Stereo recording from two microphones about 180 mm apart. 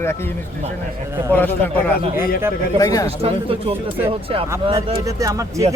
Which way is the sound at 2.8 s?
20° left (ahead or behind).